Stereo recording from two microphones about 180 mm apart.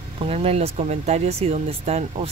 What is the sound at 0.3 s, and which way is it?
Speech, 35° right (ahead or behind).